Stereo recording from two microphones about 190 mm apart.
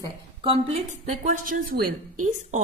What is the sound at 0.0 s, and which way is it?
A woman's voice, 30° right (ahead or behind).